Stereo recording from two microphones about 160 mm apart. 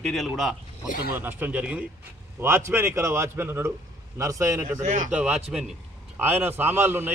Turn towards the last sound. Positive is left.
turn(degrees=-15)  # may be behind; listen again after turning